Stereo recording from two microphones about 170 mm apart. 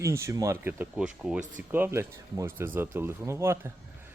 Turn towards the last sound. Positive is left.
turn(degrees=-15)  # may be behind; listen again after turning